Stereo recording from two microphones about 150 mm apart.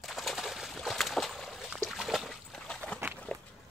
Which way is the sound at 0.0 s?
Centre (ahead or behind).